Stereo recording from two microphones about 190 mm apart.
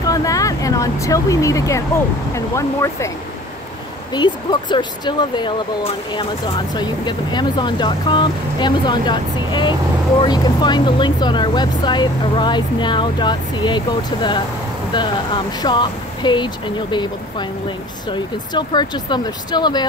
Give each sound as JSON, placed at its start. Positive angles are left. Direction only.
{"t": 0.0, "sound": "speech", "side_deg": 20}
{"t": 4.1, "sound": "speech", "side_deg": 25}